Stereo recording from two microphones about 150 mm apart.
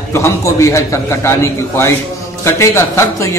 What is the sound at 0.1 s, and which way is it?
A man's voice, 20° left (ahead or behind).